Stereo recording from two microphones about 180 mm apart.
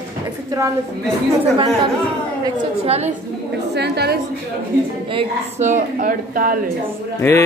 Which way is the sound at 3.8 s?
65° right (ahead or behind).